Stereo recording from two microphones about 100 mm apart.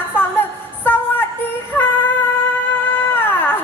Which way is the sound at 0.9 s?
20° left (ahead or behind).